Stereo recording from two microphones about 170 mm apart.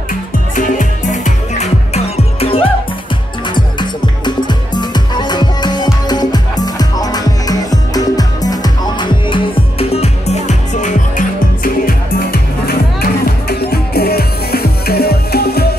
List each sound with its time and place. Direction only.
0.1 s music: 50° left (ahead or behind); by 15.7 s 65° left (ahead or behind)